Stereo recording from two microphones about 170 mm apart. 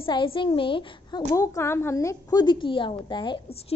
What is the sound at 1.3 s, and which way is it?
A woman's voice, 20° left (ahead or behind).